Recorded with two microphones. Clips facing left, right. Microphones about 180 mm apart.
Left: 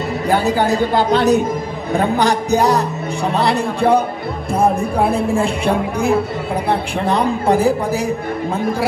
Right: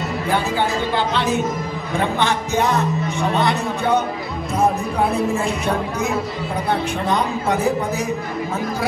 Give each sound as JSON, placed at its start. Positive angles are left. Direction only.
{"t": 0.3, "sound": "speech", "side_deg": 40}
{"t": 4.6, "sound": "speech", "side_deg": 30}